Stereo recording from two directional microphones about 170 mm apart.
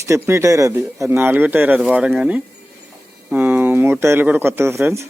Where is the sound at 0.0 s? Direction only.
15° right (ahead or behind).